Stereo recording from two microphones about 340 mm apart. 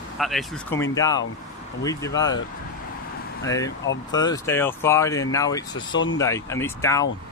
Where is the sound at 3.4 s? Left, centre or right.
Centre.